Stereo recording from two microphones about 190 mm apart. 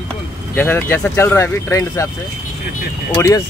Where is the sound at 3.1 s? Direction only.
15° left (ahead or behind).